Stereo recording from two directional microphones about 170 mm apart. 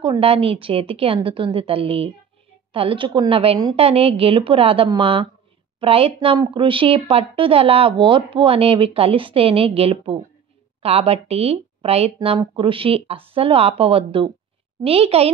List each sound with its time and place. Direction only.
0.0 s a woman's voice: 30° right (ahead or behind)